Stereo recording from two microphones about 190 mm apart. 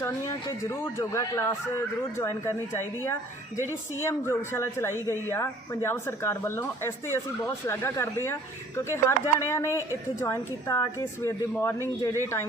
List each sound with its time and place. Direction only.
0.0 s speech: 15° left (ahead or behind)